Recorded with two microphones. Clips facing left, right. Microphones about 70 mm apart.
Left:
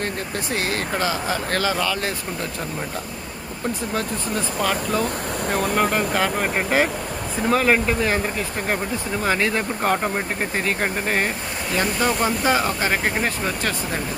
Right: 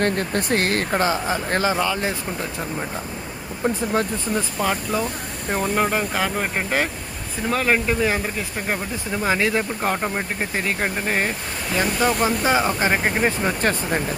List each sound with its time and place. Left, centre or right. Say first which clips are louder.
0.0 s speech: right 5 dB; right
0.9 s speech: right 1 dB; right
4.6 s speech: left 2 dB; centre
9.2 s speech: right 1 dB; centre
13.6 s speech: right 4 dB; right